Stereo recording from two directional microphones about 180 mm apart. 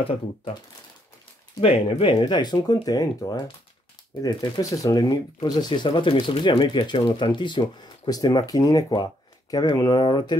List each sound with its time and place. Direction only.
1.6 s speech: 30° left (ahead or behind)